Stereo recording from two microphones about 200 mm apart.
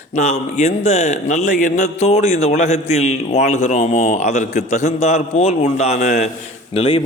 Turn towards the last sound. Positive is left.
turn(degrees=30)  # may be behind; listen again after turning